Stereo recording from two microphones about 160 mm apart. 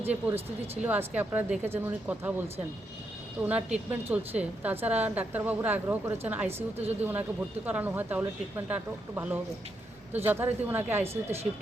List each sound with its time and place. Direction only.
0.0 s a woman's voice: 15° right (ahead or behind)
3.4 s a woman's voice: 10° right (ahead or behind)